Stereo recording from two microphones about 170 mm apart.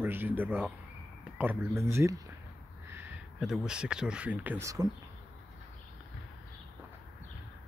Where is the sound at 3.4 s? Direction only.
Centre (ahead or behind); by 4.9 s 20° right (ahead or behind).